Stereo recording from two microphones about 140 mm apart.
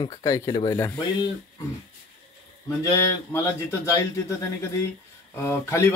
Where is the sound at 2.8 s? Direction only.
20° left (ahead or behind).